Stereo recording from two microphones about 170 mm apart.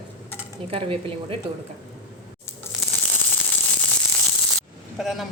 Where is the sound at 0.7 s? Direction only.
35° right (ahead or behind).